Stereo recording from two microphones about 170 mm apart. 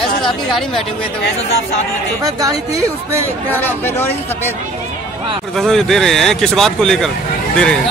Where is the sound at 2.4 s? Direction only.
15° right (ahead or behind).